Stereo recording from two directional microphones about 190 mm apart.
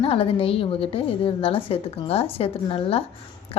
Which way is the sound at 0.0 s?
30° left (ahead or behind).